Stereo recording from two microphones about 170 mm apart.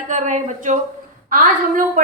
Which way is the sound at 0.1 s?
45° right (ahead or behind).